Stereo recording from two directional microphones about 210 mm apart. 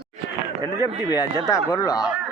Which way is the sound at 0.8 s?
20° left (ahead or behind).